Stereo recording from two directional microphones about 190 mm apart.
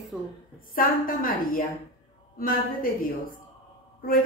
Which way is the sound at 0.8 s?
50° left (ahead or behind).